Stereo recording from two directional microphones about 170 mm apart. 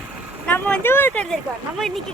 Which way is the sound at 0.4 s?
10° left (ahead or behind).